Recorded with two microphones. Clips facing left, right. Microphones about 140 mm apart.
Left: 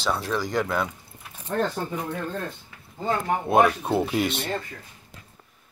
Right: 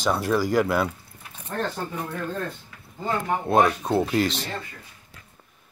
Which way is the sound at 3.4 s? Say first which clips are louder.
Left 1 dB; 5° left (ahead or behind).